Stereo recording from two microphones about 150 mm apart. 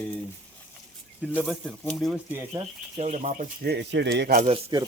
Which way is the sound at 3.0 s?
50° right (ahead or behind).